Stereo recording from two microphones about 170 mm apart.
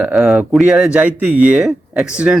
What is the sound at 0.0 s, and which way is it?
Speech, 5° right (ahead or behind).